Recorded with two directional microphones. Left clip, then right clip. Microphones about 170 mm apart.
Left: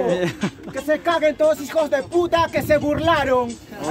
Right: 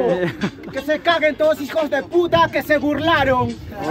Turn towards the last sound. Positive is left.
turn(degrees=5)  # may be behind; listen again after turning